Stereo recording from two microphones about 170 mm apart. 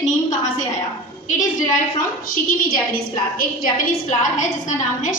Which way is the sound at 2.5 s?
55° left (ahead or behind).